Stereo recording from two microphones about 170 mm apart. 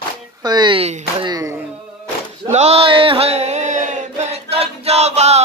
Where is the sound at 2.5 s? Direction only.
40° right (ahead or behind).